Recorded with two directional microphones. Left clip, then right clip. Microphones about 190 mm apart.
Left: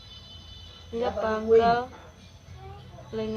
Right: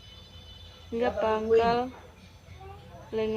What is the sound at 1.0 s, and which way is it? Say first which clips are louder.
Speech: right 1 dB; 35° right (ahead or behind).